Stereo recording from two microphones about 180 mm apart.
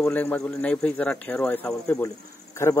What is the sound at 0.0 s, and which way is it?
Speech, 10° left (ahead or behind).